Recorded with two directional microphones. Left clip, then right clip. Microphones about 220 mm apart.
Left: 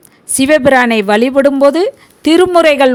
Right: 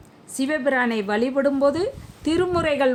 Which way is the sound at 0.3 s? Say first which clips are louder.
Left 14 dB; 40° left (ahead or behind).